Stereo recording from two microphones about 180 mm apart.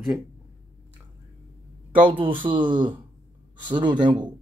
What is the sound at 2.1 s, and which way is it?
Speech, 30° right (ahead or behind).